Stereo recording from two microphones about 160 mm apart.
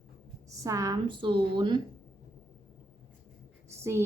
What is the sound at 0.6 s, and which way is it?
A woman's voice, 20° right (ahead or behind).